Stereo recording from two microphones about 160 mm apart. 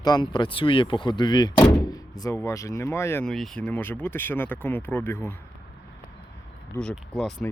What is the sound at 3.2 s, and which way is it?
Speech, centre (ahead or behind).